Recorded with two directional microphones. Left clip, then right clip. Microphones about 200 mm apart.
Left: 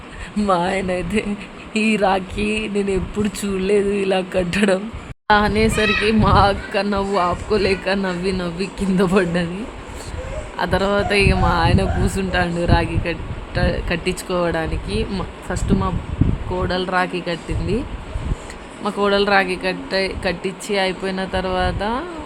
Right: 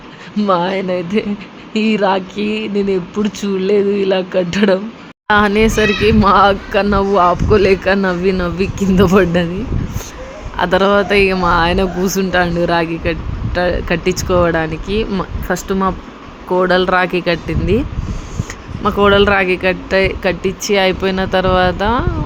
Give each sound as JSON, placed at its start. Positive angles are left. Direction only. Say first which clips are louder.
{"t": 0.3, "sound": "speech", "louder": "right 4 dB", "side_deg": -10}
{"t": 10.6, "sound": "speech", "louder": "right 7 dB", "side_deg": -20}
{"t": 18.8, "sound": "speech", "louder": "right 7 dB", "side_deg": -15}